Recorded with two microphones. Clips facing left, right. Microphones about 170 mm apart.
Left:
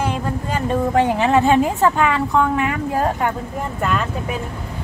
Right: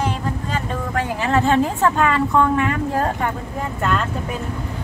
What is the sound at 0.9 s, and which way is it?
Speech, 20° left (ahead or behind).